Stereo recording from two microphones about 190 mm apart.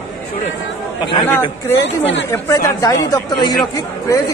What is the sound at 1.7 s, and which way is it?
Speech, 70° left (ahead or behind).